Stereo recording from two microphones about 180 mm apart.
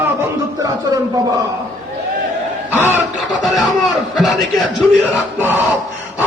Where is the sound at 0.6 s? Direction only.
20° right (ahead or behind).